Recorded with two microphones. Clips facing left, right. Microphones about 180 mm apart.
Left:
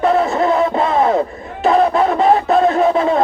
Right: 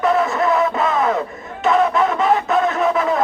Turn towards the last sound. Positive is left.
turn(degrees=30)  # may be behind; listen again after turning